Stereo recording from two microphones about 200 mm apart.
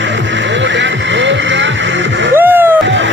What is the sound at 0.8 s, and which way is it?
Music, 65° right (ahead or behind).